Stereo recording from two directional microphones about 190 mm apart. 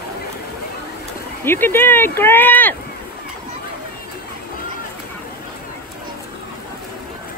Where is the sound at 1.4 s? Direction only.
10° left (ahead or behind).